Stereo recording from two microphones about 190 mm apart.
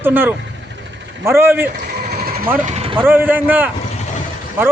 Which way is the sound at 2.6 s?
35° right (ahead or behind).